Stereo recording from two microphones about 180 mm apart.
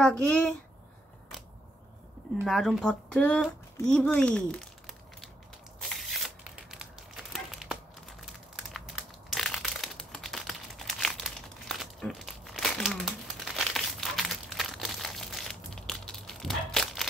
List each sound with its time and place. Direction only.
0.0 s speech: 5° left (ahead or behind)
2.4 s speech: centre (ahead or behind)
3.8 s crumpling: 5° left (ahead or behind)